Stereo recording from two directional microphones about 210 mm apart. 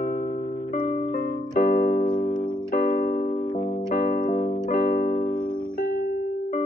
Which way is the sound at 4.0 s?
45° left (ahead or behind).